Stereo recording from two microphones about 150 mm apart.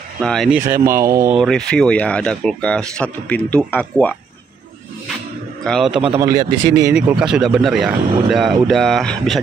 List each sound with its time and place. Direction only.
0.2 s speech: 5° left (ahead or behind)
0.7 s speech: 20° right (ahead or behind)
1.3 s speech: centre (ahead or behind)
5.6 s a man's voice: centre (ahead or behind)
6.1 s speech: 25° right (ahead or behind)
6.9 s speech: 10° right (ahead or behind)